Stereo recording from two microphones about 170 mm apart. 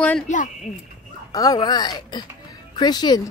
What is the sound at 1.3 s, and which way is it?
Speech, 20° left (ahead or behind).